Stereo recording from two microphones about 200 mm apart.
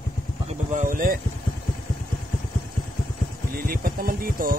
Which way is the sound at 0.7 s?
40° right (ahead or behind).